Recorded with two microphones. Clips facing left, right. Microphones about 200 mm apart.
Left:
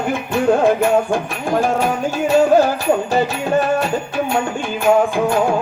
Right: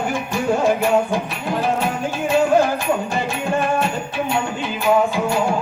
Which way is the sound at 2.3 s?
40° left (ahead or behind).